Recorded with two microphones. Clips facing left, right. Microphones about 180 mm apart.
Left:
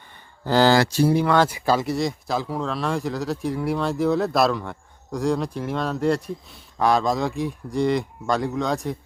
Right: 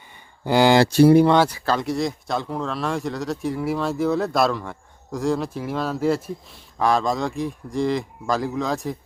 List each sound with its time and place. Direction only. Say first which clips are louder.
0.4 s a sound: right 1 dB; 15° right (ahead or behind)
0.9 s speech: right 7 dB; 60° right (ahead or behind)
1.5 s speech: left 2 dB; 10° left (ahead or behind)